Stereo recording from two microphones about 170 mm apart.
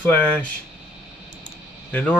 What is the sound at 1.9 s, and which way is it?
Speech, 10° left (ahead or behind).